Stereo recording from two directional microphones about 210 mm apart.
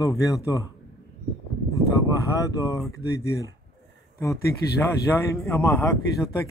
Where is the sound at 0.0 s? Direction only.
15° left (ahead or behind).